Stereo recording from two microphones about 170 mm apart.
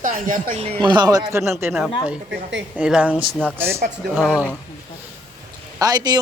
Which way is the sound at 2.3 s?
90° right.